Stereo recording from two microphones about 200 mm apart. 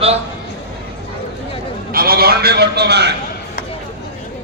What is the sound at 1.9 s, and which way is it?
A man's voice, 50° right (ahead or behind).